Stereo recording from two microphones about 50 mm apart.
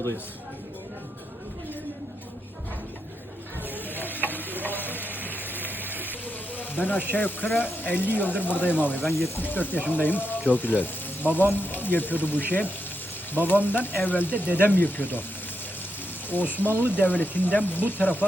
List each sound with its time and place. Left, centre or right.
3.8 s frying: left
6.6 s speech: left
9.1 s speech: left
9.4 s speech: left
16.5 s speech: left